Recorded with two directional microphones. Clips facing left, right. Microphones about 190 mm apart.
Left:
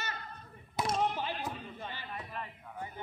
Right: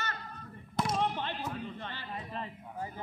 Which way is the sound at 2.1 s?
30° right (ahead or behind).